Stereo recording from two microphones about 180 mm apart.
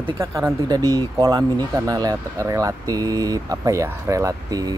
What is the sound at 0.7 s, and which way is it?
Speech, 20° right (ahead or behind).